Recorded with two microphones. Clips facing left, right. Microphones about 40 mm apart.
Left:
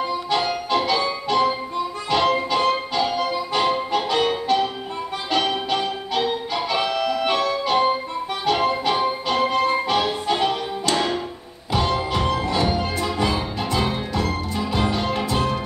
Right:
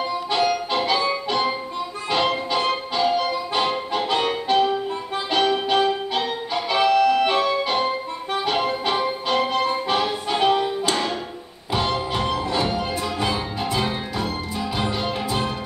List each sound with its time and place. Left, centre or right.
0.9 s music: centre
13.2 s music: centre